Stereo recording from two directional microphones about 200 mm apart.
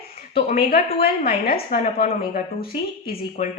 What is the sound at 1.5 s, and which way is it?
A woman's voice, 45° left (ahead or behind).